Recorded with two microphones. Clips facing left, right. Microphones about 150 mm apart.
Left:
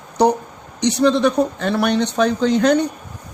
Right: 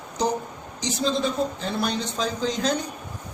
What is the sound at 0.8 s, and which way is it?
A woman's voice, 70° left (ahead or behind).